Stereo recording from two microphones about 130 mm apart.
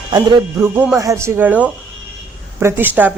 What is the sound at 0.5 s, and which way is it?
Speech, 20° right (ahead or behind).